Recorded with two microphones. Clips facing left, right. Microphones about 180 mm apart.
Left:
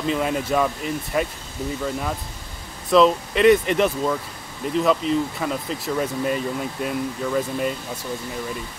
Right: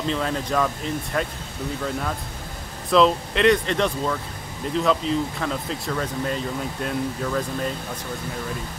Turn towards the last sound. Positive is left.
turn(degrees=5)  # may be behind; listen again after turning